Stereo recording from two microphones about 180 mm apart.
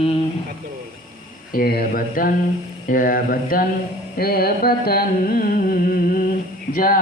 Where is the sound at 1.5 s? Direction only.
55° left (ahead or behind).